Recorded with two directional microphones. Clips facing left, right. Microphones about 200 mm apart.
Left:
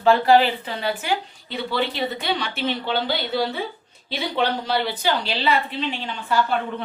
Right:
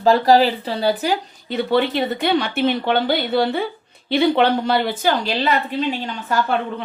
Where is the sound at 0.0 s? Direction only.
35° right (ahead or behind).